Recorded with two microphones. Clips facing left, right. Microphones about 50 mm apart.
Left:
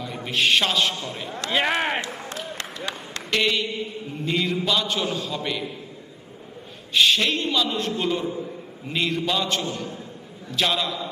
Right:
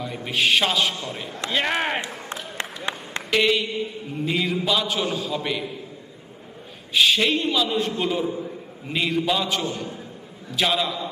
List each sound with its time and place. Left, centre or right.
0.0 s a man's voice: centre
2.6 s a sound: right
3.2 s a man's voice: centre
6.9 s a man's voice: centre